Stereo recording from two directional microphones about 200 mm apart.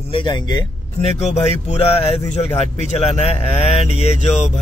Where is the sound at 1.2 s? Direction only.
35° left (ahead or behind).